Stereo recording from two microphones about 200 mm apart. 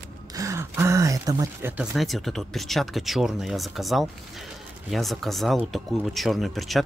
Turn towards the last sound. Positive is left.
turn(degrees=0)  # may be behind; listen again after turning